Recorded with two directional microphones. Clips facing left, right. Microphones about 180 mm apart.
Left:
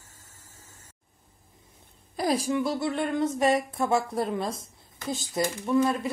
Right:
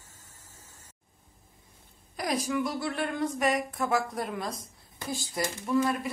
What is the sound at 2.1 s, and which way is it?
A woman's voice, 30° left (ahead or behind).